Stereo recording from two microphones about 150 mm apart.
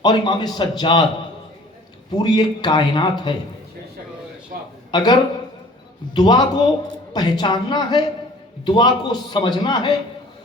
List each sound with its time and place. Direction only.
0.0 s a man's voice: 30° left (ahead or behind)
2.1 s a man's voice: 30° left (ahead or behind)
4.9 s a man's voice: 30° left (ahead or behind)
6.1 s a man's voice: 30° left (ahead or behind)